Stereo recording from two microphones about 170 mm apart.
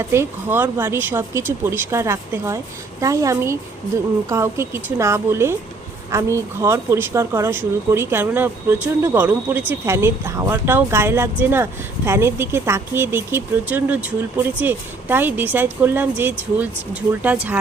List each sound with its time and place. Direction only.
0.0 s a woman's voice: 15° right (ahead or behind)